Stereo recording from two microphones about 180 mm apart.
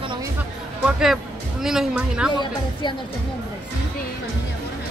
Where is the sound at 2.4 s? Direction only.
25° left (ahead or behind).